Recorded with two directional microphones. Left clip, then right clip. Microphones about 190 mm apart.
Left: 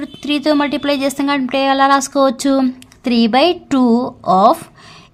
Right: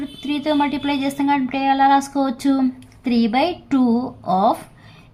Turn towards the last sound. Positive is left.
turn(degrees=40)  # may be behind; listen again after turning